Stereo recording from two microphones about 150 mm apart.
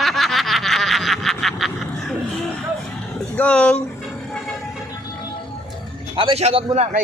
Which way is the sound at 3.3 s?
10° left (ahead or behind).